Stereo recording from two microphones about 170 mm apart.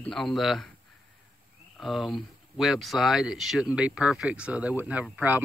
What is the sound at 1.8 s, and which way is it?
Speech, centre (ahead or behind).